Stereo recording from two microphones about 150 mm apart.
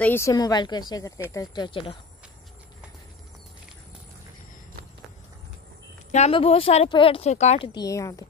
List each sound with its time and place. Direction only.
0.0 s speech: 15° left (ahead or behind)
0.3 s a woman's voice: 25° left (ahead or behind)
6.3 s speech: 40° left (ahead or behind); by 8.3 s 20° left (ahead or behind)